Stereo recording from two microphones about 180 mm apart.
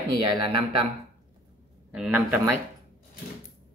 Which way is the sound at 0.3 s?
25° right (ahead or behind).